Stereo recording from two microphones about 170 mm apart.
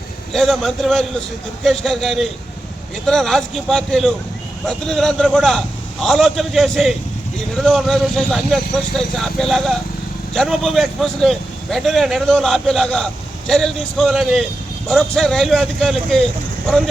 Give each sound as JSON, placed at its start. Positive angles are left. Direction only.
{"t": 0.3, "sound": "speech", "side_deg": 0}